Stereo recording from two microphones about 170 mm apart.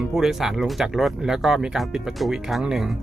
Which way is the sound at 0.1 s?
Centre (ahead or behind).